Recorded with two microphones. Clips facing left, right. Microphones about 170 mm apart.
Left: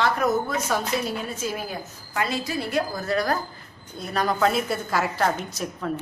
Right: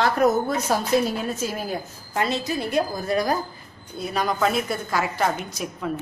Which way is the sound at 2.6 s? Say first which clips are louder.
Right 1 dB; 20° right (ahead or behind).